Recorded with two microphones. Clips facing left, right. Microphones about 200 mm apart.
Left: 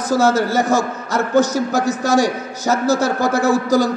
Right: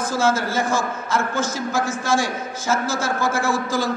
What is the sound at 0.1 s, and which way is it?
A man's voice, 40° left (ahead or behind).